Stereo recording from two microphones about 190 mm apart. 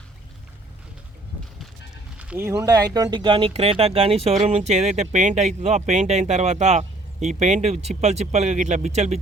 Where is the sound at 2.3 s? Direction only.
15° right (ahead or behind).